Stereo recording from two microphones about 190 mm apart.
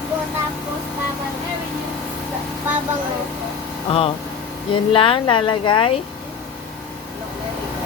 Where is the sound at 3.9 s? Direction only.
30° left (ahead or behind).